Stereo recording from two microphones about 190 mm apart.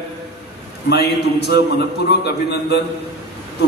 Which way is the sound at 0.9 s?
60° left (ahead or behind).